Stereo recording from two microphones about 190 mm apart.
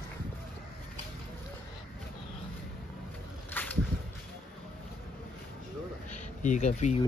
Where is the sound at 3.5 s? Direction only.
10° left (ahead or behind).